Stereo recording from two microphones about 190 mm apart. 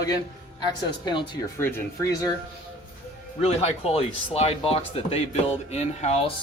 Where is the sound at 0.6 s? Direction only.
25° left (ahead or behind).